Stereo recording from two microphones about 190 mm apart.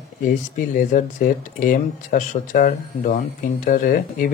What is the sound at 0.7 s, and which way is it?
Speech, 45° left (ahead or behind).